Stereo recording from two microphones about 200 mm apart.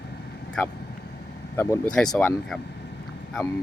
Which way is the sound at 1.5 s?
10° left (ahead or behind).